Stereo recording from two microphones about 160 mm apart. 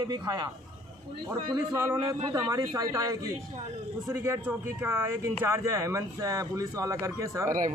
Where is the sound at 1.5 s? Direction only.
20° right (ahead or behind).